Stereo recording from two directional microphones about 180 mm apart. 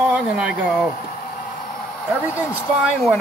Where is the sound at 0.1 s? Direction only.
5° right (ahead or behind).